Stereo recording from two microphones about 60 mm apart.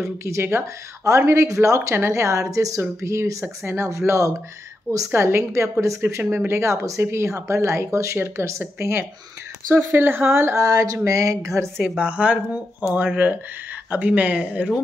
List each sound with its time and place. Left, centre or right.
0.2 s speech: right
1.0 s a woman's voice: right
2.8 s a woman's voice: right
9.7 s speech: right
10.6 s a sound: right
11.1 s a woman's voice: right
12.0 s speech: right